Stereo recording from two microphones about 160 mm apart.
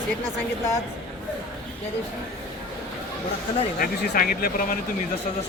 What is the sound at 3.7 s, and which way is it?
Speech, 65° left (ahead or behind).